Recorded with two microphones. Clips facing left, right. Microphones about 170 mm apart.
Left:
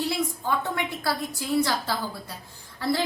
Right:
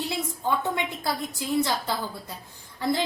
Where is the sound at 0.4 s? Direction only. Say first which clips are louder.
Right 5 dB; 20° right (ahead or behind).